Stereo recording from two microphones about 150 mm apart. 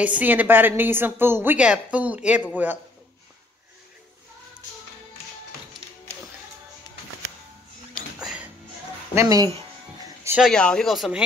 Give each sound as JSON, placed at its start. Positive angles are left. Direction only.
{"t": 0.0, "sound": "a woman's voice", "side_deg": -10}
{"t": 7.9, "sound": "music", "side_deg": -5}
{"t": 9.1, "sound": "speech", "side_deg": -20}
{"t": 10.4, "sound": "speech", "side_deg": 5}